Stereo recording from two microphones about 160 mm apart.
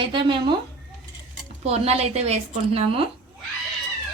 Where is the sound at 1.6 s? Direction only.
40° right (ahead or behind).